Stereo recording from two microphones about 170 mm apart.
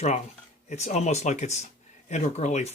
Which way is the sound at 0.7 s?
40° left (ahead or behind).